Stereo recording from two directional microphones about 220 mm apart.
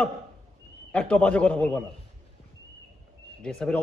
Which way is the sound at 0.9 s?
5° left (ahead or behind).